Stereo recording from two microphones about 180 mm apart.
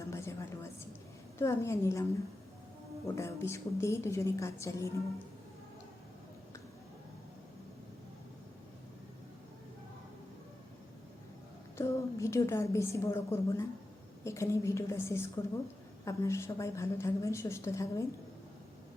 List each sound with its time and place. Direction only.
0.0 s a sound: 15° left (ahead or behind)
1.4 s a woman's voice: 15° left (ahead or behind)
3.2 s a woman's voice: 15° left (ahead or behind)
11.8 s a woman's voice: 15° left (ahead or behind)